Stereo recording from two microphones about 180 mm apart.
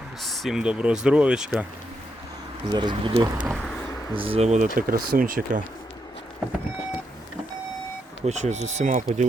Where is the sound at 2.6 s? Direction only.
25° right (ahead or behind).